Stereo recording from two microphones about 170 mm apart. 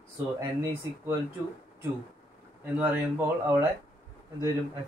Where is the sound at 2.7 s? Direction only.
10° right (ahead or behind).